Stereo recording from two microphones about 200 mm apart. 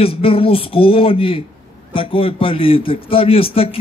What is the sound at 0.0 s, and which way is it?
A man's voice, 25° left (ahead or behind).